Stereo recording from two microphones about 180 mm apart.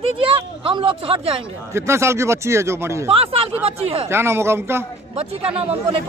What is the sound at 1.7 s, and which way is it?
A man's voice, 15° right (ahead or behind).